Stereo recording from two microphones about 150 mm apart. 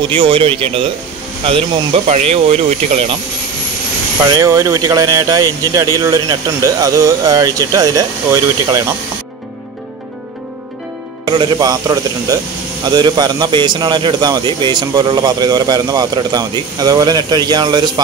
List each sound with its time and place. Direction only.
0.1 s speech: 35° right (ahead or behind)
2.0 s speech: 45° right (ahead or behind)
4.3 s speech: 20° right (ahead or behind)
11.2 s speech: 30° right (ahead or behind)